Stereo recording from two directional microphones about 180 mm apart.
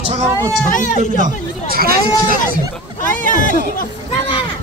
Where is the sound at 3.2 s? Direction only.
45° left (ahead or behind).